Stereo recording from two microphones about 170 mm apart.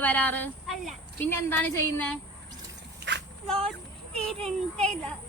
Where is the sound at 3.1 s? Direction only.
90° right.